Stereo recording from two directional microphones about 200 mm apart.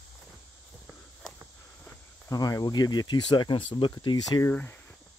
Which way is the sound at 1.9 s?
15° left (ahead or behind).